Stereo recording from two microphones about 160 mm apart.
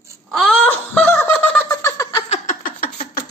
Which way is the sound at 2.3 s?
55° left (ahead or behind).